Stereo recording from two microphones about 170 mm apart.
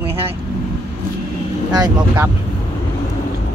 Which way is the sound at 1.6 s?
25° right (ahead or behind).